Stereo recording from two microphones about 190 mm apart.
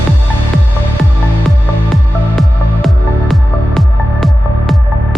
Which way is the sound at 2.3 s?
Centre (ahead or behind).